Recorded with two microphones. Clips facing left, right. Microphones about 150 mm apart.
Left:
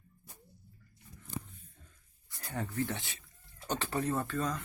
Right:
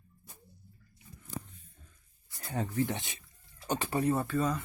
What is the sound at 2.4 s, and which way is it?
Speech, 15° right (ahead or behind).